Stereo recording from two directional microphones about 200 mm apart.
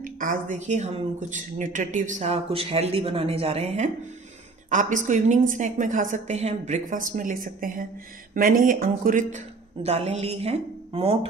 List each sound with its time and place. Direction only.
0.0 s speech: 40° right (ahead or behind)
9.8 s speech: 30° right (ahead or behind)